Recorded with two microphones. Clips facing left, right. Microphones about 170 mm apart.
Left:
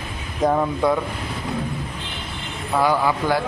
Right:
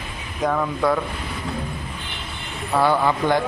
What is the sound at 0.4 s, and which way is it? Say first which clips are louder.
Speech: left 2 dB; 25° left (ahead or behind).